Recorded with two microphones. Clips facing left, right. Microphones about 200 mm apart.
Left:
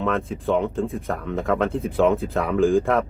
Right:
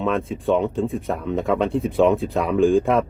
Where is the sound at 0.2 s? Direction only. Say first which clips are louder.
Right 2 dB; centre (ahead or behind).